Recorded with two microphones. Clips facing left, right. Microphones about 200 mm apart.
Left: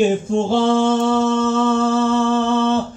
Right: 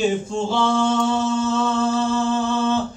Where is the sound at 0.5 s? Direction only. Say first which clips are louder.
Left 4 dB; 55° left (ahead or behind).